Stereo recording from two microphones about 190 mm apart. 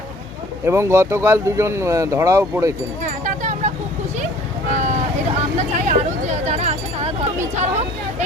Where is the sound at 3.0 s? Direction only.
40° right (ahead or behind).